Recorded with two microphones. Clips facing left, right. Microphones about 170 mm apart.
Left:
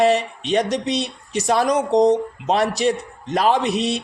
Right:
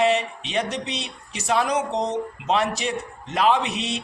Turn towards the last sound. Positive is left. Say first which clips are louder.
# left 5 dB
turn(degrees=40)  # may be behind; listen again after turning